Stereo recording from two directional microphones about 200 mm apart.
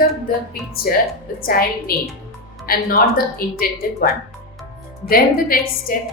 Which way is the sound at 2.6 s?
45° left (ahead or behind).